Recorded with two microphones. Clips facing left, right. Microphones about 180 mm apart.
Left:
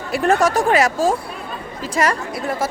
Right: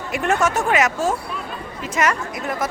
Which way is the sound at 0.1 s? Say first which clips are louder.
Left 4 dB; 35° left (ahead or behind).